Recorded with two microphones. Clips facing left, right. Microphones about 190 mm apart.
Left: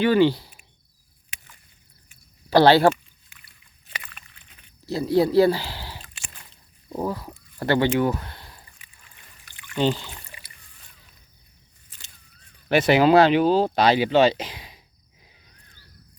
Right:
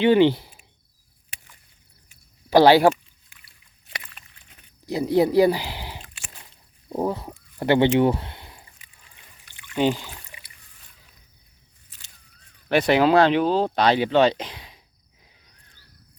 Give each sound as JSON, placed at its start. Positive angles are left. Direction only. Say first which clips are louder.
{"t": 0.0, "sound": "speech", "louder": "right 2 dB", "side_deg": -20}
{"t": 2.5, "sound": "speech", "louder": "right 1 dB", "side_deg": -15}
{"t": 4.9, "sound": "speech", "louder": "right 1 dB", "side_deg": -20}
{"t": 9.7, "sound": "speech", "louder": "right 1 dB", "side_deg": -10}
{"t": 12.6, "sound": "speech", "louder": "left 1 dB", "side_deg": 5}